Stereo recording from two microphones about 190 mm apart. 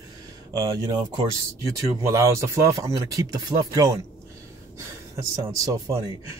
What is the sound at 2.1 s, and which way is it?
Speech, 15° right (ahead or behind).